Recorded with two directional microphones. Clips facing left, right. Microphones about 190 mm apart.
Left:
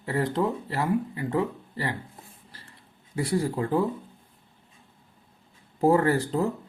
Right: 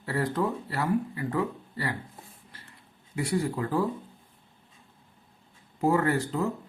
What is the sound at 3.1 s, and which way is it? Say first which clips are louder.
Speech: left 2 dB; 35° left (ahead or behind).